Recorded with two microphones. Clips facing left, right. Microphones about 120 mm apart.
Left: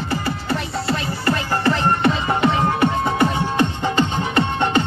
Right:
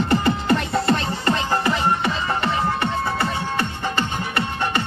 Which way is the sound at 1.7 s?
5° right (ahead or behind).